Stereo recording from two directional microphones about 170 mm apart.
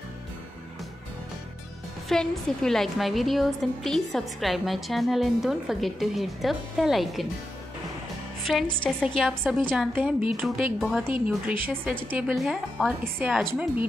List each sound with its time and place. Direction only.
2.0 s a woman's voice: 5° left (ahead or behind)
8.5 s a woman's voice: centre (ahead or behind)
9.4 s a woman's voice: 10° right (ahead or behind)
12.4 s a woman's voice: centre (ahead or behind)